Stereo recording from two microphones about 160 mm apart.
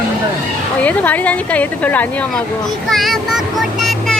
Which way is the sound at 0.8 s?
10° left (ahead or behind).